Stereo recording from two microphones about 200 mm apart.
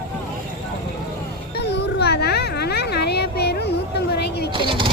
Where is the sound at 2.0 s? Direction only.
55° left (ahead or behind).